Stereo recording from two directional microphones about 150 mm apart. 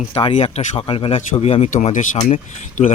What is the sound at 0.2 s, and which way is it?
Speech, 40° left (ahead or behind).